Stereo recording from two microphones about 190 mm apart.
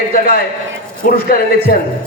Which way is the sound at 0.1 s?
50° left (ahead or behind).